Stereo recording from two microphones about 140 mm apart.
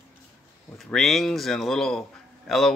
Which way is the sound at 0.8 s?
Centre (ahead or behind).